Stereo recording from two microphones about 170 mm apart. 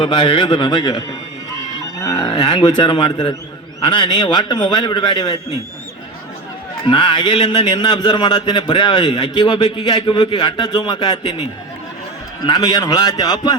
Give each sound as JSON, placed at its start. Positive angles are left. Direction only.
{"t": 0.0, "sound": "a man's voice", "side_deg": 30}
{"t": 2.0, "sound": "a man's voice", "side_deg": 20}
{"t": 6.8, "sound": "a man's voice", "side_deg": 30}
{"t": 12.5, "sound": "a man's voice", "side_deg": 25}